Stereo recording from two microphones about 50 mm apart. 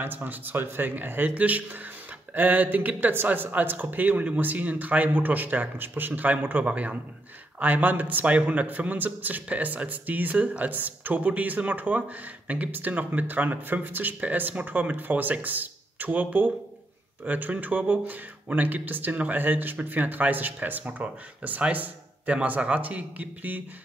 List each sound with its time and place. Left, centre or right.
0.0 s a man's voice: right